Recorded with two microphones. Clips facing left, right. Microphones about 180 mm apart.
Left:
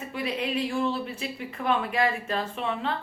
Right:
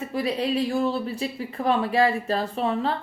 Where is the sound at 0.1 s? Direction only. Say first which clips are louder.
Right 4 dB; 35° right (ahead or behind).